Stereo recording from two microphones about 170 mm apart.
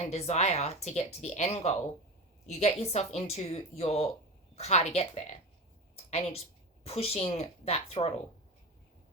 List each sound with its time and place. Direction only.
0.0 s speech: 40° left (ahead or behind)